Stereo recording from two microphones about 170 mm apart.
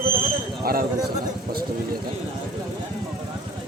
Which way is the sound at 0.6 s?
60° right (ahead or behind).